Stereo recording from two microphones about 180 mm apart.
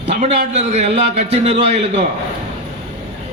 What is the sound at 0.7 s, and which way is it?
A man's voice, 35° right (ahead or behind).